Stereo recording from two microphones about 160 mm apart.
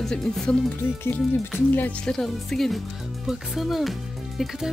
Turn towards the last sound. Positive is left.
turn(degrees=0)  # may be behind; listen again after turning